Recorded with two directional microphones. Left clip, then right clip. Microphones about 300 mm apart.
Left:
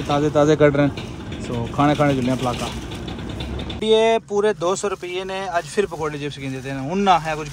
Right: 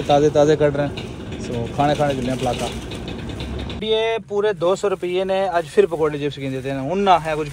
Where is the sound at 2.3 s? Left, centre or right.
Centre.